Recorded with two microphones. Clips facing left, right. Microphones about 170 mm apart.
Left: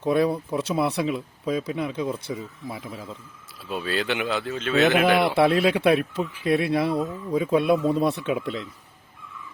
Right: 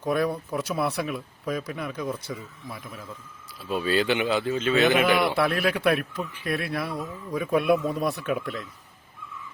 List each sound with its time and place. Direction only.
0.0 s speech: 25° left (ahead or behind)
3.7 s a man's voice: centre (ahead or behind)
5.4 s speech: 25° left (ahead or behind)